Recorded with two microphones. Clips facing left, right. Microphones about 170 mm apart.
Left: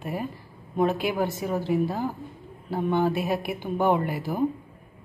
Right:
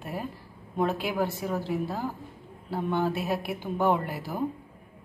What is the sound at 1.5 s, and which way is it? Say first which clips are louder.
A woman's voice: left 5 dB; 15° left (ahead or behind).